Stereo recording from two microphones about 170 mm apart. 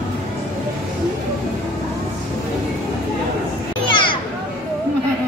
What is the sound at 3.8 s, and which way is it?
Children playing, 30° left (ahead or behind).